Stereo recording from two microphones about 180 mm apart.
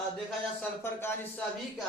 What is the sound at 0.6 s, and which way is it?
Speech, 10° left (ahead or behind).